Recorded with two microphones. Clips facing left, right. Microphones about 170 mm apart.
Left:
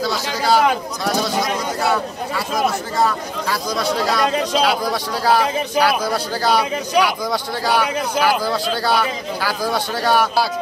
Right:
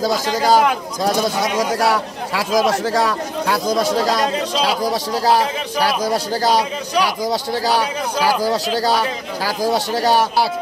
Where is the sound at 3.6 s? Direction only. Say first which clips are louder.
Right 3 dB; 45° right (ahead or behind).